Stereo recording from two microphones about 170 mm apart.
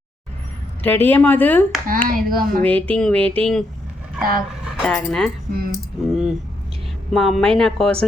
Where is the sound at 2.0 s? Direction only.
55° right (ahead or behind).